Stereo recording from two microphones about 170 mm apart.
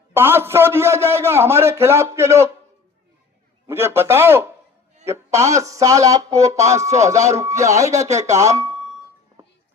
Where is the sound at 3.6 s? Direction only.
15° right (ahead or behind).